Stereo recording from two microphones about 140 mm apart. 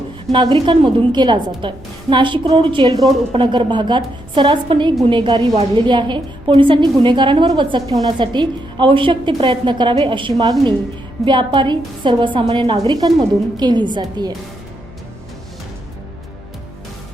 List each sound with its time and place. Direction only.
0.3 s a woman's voice: 30° right (ahead or behind)
12.9 s a woman's voice: 30° right (ahead or behind)